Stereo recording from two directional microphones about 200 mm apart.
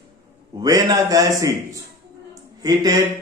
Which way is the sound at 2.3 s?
20° right (ahead or behind).